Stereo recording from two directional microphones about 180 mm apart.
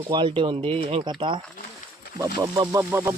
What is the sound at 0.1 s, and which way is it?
Speech, 25° right (ahead or behind).